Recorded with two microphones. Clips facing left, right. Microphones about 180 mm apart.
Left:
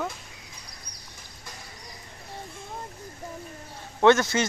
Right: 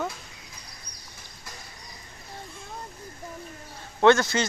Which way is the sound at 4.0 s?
20° left (ahead or behind).